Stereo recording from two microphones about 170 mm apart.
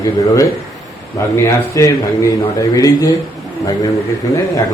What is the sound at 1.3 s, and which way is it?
A man's voice, 15° left (ahead or behind).